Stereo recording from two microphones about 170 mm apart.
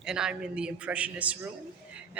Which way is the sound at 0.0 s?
5° right (ahead or behind).